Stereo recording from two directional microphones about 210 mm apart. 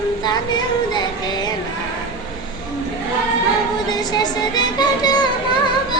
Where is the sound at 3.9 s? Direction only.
20° left (ahead or behind).